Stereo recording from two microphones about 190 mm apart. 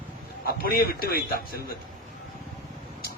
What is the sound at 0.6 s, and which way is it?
Speech, 50° left (ahead or behind).